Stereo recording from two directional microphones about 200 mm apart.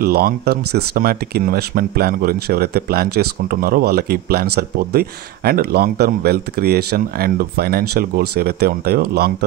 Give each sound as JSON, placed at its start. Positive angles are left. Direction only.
{"t": 0.0, "sound": "speech", "side_deg": -50}